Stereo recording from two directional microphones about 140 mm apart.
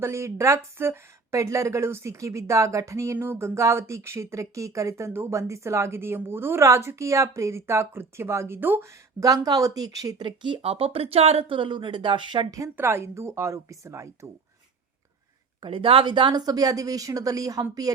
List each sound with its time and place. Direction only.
0.0 s speech: 20° right (ahead or behind)
9.2 s speech: 25° right (ahead or behind)
15.6 s speech: 40° right (ahead or behind)